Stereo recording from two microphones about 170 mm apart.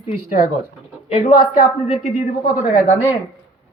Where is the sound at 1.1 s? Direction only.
30° left (ahead or behind).